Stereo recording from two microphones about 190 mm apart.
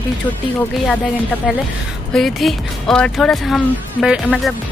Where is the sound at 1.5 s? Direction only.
Centre (ahead or behind).